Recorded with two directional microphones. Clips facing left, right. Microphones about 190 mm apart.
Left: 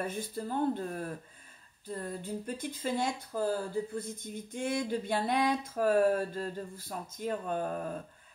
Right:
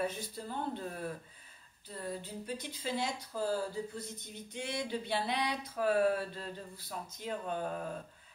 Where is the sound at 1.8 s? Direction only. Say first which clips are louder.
Left 3 dB; 50° left (ahead or behind).